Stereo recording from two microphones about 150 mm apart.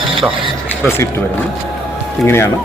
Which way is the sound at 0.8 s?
15° left (ahead or behind).